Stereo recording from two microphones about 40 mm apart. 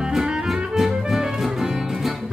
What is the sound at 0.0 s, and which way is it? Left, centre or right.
Music, centre.